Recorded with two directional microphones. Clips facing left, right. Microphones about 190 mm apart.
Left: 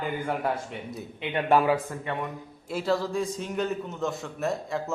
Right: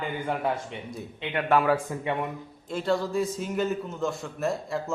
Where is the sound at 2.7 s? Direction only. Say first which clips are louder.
Even; 5° left (ahead or behind).